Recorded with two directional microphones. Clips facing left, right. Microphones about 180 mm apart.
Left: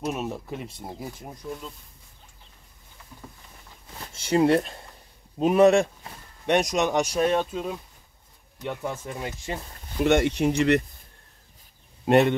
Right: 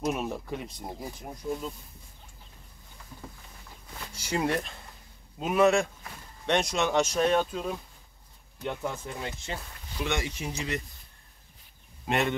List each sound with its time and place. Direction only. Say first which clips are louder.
0.0 s speech: left 1 dB; 5° left (ahead or behind)
4.1 s speech: left 9 dB; 25° left (ahead or behind)
6.4 s speech: left 4 dB; 15° left (ahead or behind)
9.9 s speech: left 11 dB; 55° left (ahead or behind)
12.1 s speech: left 9 dB; 40° left (ahead or behind)